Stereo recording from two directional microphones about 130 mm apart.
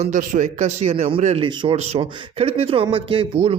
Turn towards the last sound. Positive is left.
turn(degrees=-50)  # may be behind; listen again after turning